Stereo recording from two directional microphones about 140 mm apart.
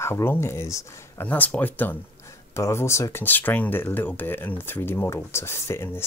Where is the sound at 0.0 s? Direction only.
15° left (ahead or behind).